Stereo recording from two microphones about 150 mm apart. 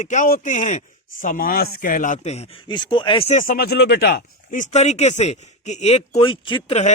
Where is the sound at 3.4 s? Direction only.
75° left (ahead or behind); by 6.7 s 35° left (ahead or behind).